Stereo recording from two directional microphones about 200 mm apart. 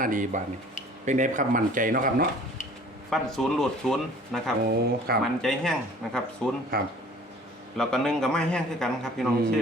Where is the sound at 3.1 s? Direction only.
Centre (ahead or behind).